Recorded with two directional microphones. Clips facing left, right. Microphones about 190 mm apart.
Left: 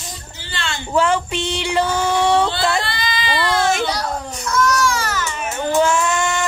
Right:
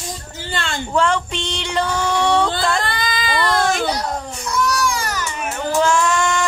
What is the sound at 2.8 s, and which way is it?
Baby cry, 45° right (ahead or behind).